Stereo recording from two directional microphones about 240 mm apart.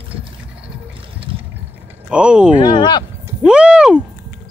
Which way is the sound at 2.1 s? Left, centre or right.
Centre.